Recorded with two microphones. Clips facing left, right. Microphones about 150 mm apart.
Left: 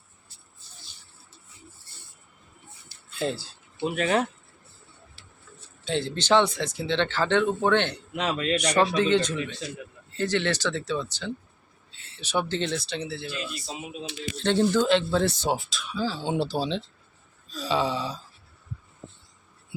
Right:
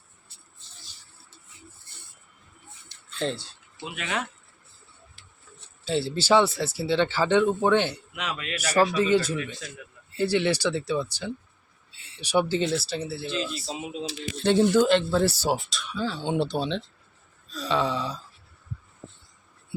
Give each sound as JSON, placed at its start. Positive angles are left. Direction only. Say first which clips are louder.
{"t": 3.2, "sound": "speech", "louder": "even", "side_deg": 5}
{"t": 3.8, "sound": "speech", "louder": "left 8 dB", "side_deg": 40}
{"t": 5.2, "sound": "tick-tock", "louder": "left 3 dB", "side_deg": -50}
{"t": 5.8, "sound": "speech", "louder": "right 2 dB", "side_deg": -5}
{"t": 8.1, "sound": "speech", "louder": "left 7 dB", "side_deg": 35}
{"t": 9.0, "sound": "speech", "louder": "even", "side_deg": -5}
{"t": 13.2, "sound": "a man's voice", "louder": "right 4 dB", "side_deg": -25}
{"t": 14.3, "sound": "speech", "louder": "right 3 dB", "side_deg": -10}